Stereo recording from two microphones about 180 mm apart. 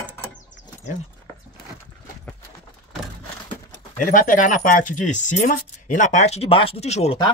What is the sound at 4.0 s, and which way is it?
Speech, 45° left (ahead or behind).